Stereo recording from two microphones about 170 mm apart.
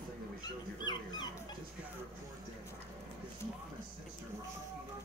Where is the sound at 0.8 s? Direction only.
25° left (ahead or behind).